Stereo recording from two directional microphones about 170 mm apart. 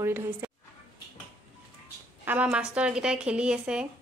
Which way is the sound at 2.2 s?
10° right (ahead or behind).